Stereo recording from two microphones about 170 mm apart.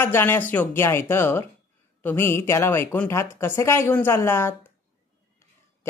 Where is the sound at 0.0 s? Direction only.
15° left (ahead or behind).